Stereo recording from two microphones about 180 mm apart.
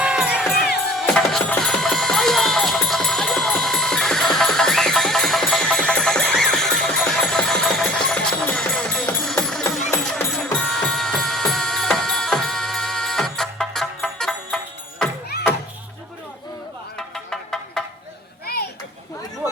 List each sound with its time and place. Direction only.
0.0 s music: 5° right (ahead or behind)
17.2 s music: 5° left (ahead or behind)
18.4 s children playing: 60° left (ahead or behind)